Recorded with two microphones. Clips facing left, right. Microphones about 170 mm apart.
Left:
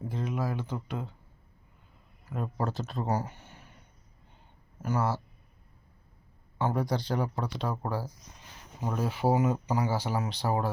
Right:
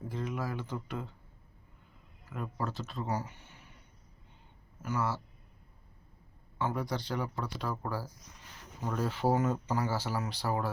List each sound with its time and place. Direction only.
0.1 s speech: 20° left (ahead or behind)
2.3 s speech: 35° left (ahead or behind)
4.8 s speech: 40° left (ahead or behind)
6.6 s speech: 35° left (ahead or behind)
7.4 s speech: 20° left (ahead or behind)